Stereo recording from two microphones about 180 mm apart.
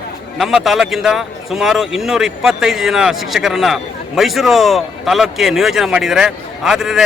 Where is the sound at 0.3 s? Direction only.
Centre (ahead or behind).